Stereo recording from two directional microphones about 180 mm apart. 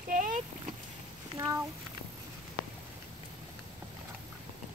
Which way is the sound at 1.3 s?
20° right (ahead or behind).